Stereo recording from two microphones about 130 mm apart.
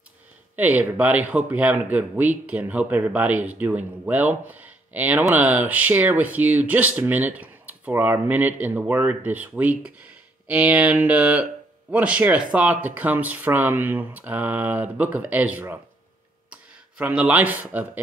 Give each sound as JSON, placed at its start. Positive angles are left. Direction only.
{"t": 0.6, "sound": "speech", "side_deg": -15}
{"t": 17.0, "sound": "speech", "side_deg": -10}